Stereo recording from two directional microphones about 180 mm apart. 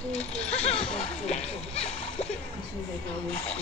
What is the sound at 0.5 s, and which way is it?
Splash, 35° left (ahead or behind).